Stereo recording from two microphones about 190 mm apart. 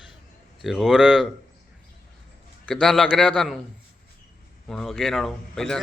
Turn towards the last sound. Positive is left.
turn(degrees=5)  # may be behind; listen again after turning